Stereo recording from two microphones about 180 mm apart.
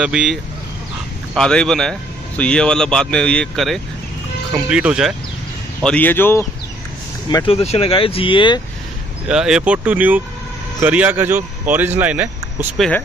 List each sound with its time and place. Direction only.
0.0 s a man's voice: 5° right (ahead or behind)
5.8 s speech: 5° left (ahead or behind)
7.2 s speech: 30° left (ahead or behind)
9.3 s speech: 5° right (ahead or behind)